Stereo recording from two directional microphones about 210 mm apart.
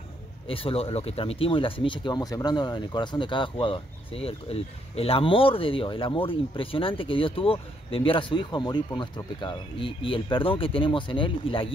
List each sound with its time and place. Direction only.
0.5 s speech: 25° left (ahead or behind)